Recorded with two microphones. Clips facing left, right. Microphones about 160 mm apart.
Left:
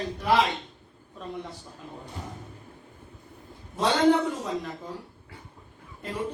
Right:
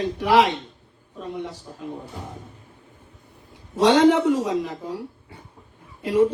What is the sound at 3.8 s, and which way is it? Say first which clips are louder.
Speech: right 6 dB; 90° right.